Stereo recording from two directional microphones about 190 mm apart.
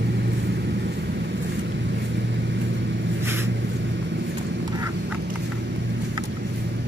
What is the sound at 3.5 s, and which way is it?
Vehicle, 65° right (ahead or behind).